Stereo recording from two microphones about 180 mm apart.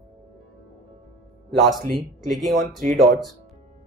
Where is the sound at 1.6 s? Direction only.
Centre (ahead or behind).